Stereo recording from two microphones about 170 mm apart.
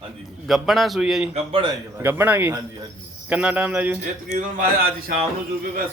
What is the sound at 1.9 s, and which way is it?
Speech, 15° right (ahead or behind).